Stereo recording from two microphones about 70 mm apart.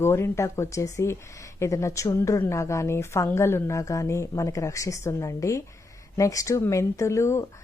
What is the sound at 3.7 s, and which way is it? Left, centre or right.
Speech, left.